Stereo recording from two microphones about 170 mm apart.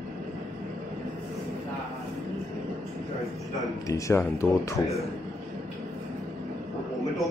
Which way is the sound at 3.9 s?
15° left (ahead or behind).